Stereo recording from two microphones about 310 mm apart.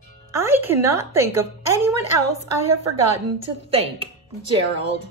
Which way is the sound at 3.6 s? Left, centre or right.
Centre.